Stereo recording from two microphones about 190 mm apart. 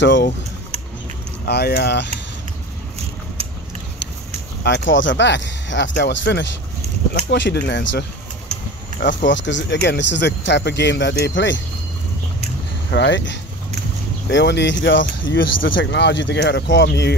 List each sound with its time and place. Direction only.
0.0 s speech: 70° left (ahead or behind)
1.4 s speech: 60° left (ahead or behind)
4.6 s speech: 70° left (ahead or behind)
9.0 s speech: 70° left (ahead or behind)
12.9 s speech: 70° left (ahead or behind)